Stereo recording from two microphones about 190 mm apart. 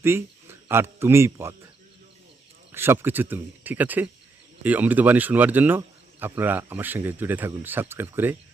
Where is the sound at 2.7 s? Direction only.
10° right (ahead or behind).